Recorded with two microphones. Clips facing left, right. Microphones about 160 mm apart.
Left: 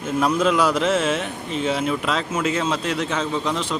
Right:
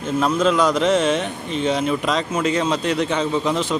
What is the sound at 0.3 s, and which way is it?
Speech, 10° left (ahead or behind).